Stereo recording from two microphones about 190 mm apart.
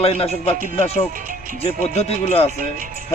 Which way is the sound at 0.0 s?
30° left (ahead or behind).